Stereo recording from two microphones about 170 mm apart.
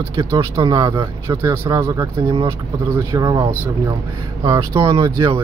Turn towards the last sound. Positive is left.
turn(degrees=-20)  # may be behind; listen again after turning